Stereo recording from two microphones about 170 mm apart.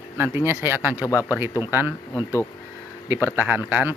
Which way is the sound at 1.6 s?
15° right (ahead or behind).